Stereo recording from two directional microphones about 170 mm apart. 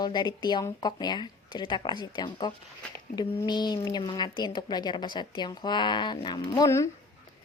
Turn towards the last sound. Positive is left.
turn(degrees=20)  # may be behind; listen again after turning